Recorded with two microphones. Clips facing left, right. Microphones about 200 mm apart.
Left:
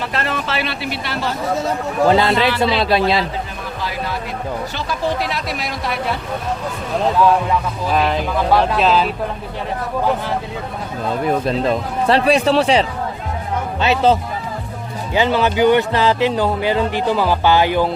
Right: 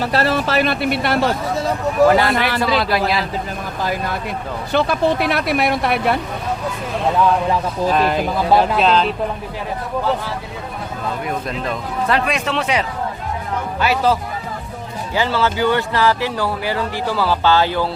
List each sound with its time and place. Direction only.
0.0 s speech: 35° right (ahead or behind); by 1.3 s 55° right (ahead or behind)
2.0 s speech: 20° left (ahead or behind)
3.8 s speech: 50° right (ahead or behind)
4.7 s speech: 60° right (ahead or behind)
7.9 s speech: centre (ahead or behind)
11.4 s speech: 30° left (ahead or behind)
13.8 s speech: 25° left (ahead or behind)